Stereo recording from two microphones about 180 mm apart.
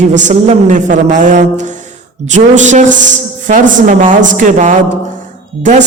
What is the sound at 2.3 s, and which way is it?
A man's voice, 45° right (ahead or behind).